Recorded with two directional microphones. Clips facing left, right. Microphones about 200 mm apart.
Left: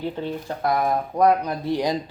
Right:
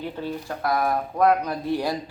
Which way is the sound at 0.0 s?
20° left (ahead or behind).